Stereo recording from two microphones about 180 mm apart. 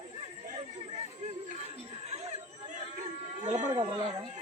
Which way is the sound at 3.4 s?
40° right (ahead or behind).